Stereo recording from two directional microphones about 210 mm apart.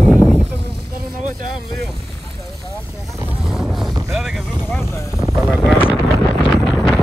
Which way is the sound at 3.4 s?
Centre (ahead or behind).